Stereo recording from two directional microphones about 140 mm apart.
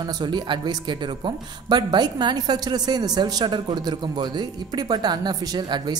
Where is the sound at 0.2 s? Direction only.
30° right (ahead or behind).